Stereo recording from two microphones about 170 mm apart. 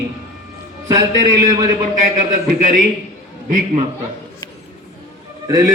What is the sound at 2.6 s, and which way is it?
Speech, 50° right (ahead or behind).